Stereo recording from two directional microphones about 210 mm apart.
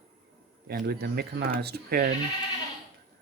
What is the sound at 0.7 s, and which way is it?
A man's voice, 50° right (ahead or behind).